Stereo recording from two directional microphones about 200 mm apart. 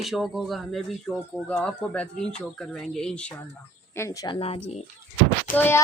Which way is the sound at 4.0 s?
20° left (ahead or behind).